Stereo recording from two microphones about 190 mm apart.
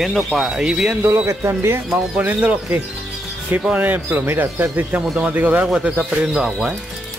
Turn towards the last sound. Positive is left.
turn(degrees=0)  # may be behind; listen again after turning